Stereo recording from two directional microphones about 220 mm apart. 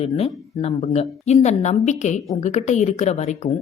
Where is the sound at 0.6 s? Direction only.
30° left (ahead or behind).